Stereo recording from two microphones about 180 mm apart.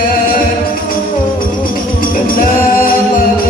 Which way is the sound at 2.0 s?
55° left (ahead or behind).